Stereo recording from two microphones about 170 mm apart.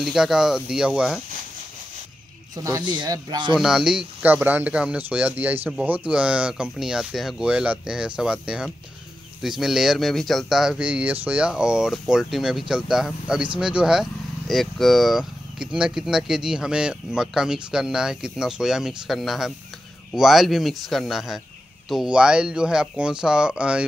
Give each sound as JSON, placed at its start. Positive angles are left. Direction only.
{"t": 0.0, "sound": "speech", "side_deg": -5}
{"t": 2.5, "sound": "speech", "side_deg": -20}
{"t": 3.5, "sound": "speech", "side_deg": -5}